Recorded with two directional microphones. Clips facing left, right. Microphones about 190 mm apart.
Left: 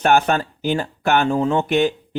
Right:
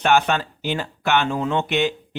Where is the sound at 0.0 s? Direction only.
45° left (ahead or behind).